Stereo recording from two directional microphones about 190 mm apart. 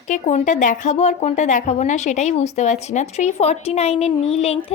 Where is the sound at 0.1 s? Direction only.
40° left (ahead or behind).